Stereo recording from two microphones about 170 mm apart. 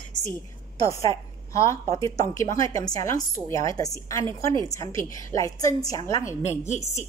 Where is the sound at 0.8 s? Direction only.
20° left (ahead or behind).